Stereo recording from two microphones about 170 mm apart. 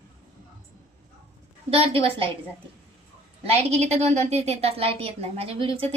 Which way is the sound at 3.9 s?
40° right (ahead or behind).